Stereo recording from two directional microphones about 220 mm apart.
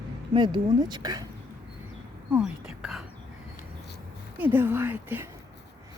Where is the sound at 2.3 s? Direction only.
5° right (ahead or behind).